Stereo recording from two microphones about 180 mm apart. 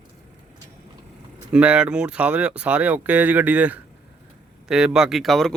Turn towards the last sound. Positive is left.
turn(degrees=0)  # may be behind; listen again after turning